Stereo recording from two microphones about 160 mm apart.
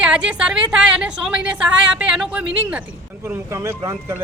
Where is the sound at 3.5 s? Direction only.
20° right (ahead or behind).